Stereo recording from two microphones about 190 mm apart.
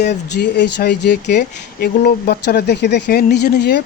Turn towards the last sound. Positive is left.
turn(degrees=60)  # may be behind; listen again after turning